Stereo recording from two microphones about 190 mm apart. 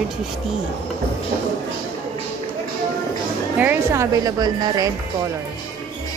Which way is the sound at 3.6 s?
10° right (ahead or behind).